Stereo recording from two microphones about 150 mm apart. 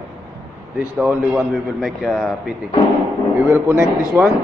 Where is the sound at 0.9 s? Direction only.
5° right (ahead or behind).